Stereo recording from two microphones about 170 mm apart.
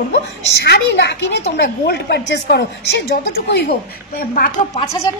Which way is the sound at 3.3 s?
70° left (ahead or behind).